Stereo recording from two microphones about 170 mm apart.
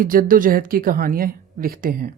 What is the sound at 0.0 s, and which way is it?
A woman's voice, 55° right (ahead or behind).